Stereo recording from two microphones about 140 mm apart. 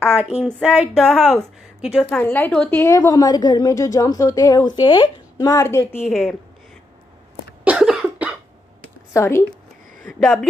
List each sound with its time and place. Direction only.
0.4 s a sound: 10° right (ahead or behind)
1.0 s a woman's voice: centre (ahead or behind)
2.0 s a woman's voice: 10° left (ahead or behind)
3.0 s a woman's voice: 25° left (ahead or behind)
6.0 s a woman's voice: 5° left (ahead or behind)
7.6 s cough: 5° right (ahead or behind)
9.1 s speech: 20° left (ahead or behind)